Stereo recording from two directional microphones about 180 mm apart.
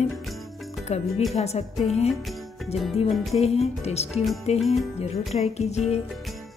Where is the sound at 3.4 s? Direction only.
35° left (ahead or behind).